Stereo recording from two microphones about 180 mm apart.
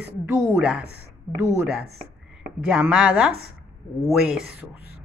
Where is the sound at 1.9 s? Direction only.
5° right (ahead or behind).